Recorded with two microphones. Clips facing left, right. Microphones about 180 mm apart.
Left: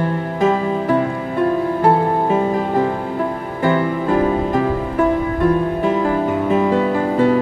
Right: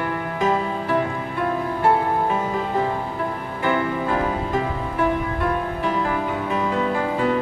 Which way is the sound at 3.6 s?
35° left (ahead or behind).